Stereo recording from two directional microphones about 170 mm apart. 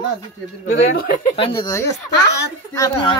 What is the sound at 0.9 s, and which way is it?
Speech, 60° left (ahead or behind).